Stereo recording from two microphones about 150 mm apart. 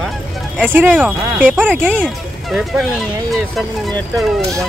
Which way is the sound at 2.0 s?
Centre (ahead or behind).